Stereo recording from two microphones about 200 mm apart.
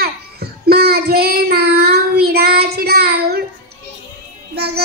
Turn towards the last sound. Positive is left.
turn(degrees=-50)  # may be behind; listen again after turning